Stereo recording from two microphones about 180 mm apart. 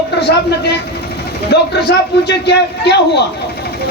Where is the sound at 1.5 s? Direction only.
65° left (ahead or behind).